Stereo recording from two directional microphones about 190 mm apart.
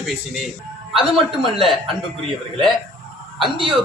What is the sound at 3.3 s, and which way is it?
Speech, 25° right (ahead or behind).